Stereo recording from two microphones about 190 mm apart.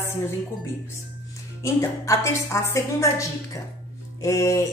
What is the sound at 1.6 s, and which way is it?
A woman's voice, 15° left (ahead or behind).